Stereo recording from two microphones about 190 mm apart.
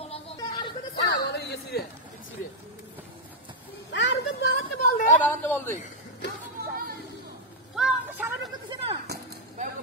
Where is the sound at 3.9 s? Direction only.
65° left (ahead or behind).